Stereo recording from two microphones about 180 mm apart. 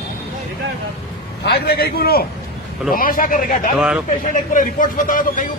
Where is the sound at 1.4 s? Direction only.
60° left (ahead or behind).